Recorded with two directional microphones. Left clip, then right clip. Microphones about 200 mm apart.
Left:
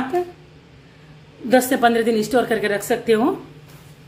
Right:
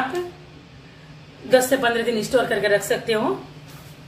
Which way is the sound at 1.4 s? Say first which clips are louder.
Left 1 dB; 55° left (ahead or behind).